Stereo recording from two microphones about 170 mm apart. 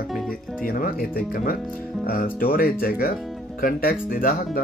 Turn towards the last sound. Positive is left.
turn(degrees=55)  # may be behind; listen again after turning